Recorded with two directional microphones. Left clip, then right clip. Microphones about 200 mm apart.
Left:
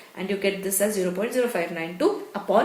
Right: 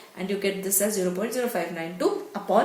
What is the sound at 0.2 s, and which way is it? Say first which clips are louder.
Speech: left 2 dB; 40° left (ahead or behind).